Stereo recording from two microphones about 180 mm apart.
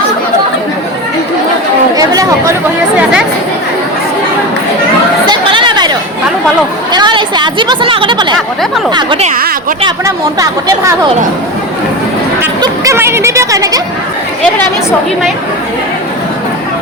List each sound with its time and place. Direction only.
2.0 s chatter: 20° right (ahead or behind)
3.0 s chatter: 5° right (ahead or behind)
5.2 s chatter: 25° right (ahead or behind)
6.9 s a woman's voice: 25° right (ahead or behind)
12.6 s speech: 15° right (ahead or behind)
14.4 s a woman's voice: 10° left (ahead or behind)